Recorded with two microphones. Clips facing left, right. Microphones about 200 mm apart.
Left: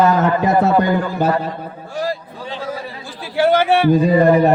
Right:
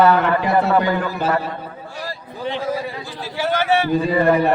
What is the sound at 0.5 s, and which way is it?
Speech, 15° left (ahead or behind).